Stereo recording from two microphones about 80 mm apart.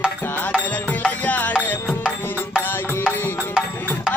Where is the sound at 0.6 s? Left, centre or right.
Centre.